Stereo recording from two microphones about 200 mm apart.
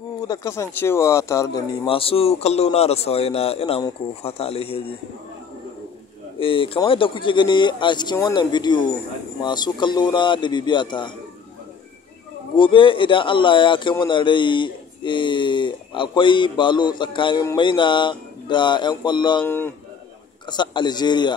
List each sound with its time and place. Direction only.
0.2 s speech: 15° left (ahead or behind)
1.9 s a man's voice: 30° left (ahead or behind)
6.4 s speech: 25° left (ahead or behind)
12.5 s speech: 25° left (ahead or behind)
19.4 s speech: 10° left (ahead or behind)
20.4 s speech: 20° left (ahead or behind)